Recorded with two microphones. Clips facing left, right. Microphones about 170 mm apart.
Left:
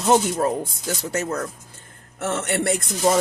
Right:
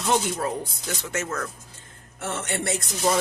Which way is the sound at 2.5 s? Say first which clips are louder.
Left 6 dB; 60° left (ahead or behind).